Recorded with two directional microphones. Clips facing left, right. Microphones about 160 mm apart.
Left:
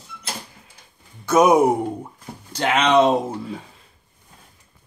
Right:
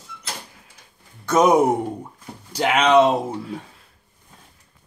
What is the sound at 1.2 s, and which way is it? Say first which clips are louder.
Speech: left 1 dB; 5° left (ahead or behind).